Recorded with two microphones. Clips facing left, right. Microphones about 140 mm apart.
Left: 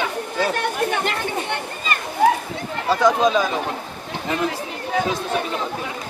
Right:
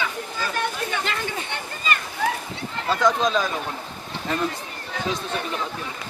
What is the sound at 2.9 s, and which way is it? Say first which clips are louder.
Speech: left 4 dB; 10° left (ahead or behind).